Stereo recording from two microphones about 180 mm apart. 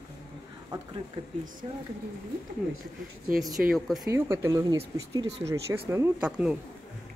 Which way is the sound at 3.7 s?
Centre (ahead or behind).